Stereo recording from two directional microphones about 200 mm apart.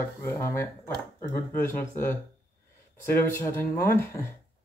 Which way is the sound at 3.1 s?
10° left (ahead or behind).